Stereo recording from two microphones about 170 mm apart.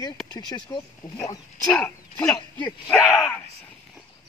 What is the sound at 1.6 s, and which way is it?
Speech, 10° left (ahead or behind).